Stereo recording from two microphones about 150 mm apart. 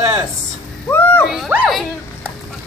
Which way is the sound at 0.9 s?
15° left (ahead or behind).